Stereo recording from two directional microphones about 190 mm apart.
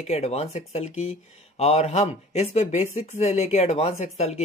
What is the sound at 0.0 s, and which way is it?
Speech, 35° left (ahead or behind).